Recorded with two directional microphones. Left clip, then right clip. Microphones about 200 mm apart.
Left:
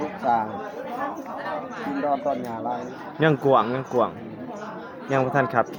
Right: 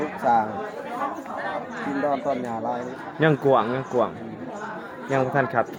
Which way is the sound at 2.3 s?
55° right (ahead or behind).